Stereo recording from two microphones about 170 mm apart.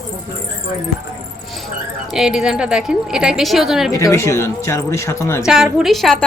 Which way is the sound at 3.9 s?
15° left (ahead or behind).